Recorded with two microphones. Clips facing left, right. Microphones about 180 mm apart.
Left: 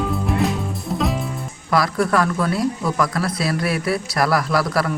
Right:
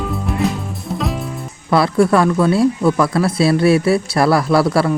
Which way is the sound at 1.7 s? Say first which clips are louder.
Right 6 dB; 25° right (ahead or behind).